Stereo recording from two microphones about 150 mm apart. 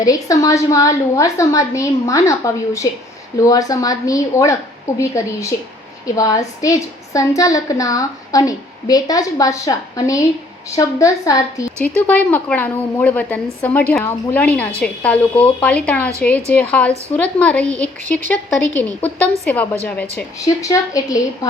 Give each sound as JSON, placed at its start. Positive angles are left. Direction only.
{"t": 0.0, "sound": "a woman's voice", "side_deg": 25}
{"t": 11.8, "sound": "a woman's voice", "side_deg": 10}
{"t": 20.6, "sound": "a woman's voice", "side_deg": 20}